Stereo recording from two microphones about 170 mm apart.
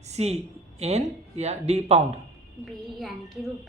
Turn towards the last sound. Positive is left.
turn(degrees=0)  # may be behind; listen again after turning